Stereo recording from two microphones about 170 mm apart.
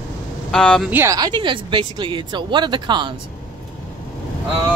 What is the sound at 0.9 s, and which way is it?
Speech, 20° right (ahead or behind).